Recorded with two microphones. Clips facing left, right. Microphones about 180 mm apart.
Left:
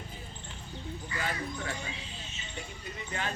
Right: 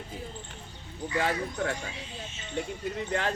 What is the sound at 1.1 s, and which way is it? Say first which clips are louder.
Speech: right 8 dB; 75° right (ahead or behind).